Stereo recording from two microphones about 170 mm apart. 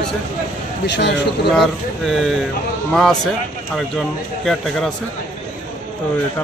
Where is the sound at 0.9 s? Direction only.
90° left.